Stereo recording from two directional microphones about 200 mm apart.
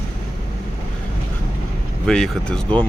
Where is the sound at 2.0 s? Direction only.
5° left (ahead or behind).